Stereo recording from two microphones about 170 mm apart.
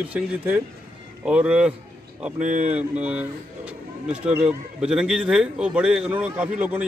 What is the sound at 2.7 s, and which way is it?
A man's voice, 10° right (ahead or behind).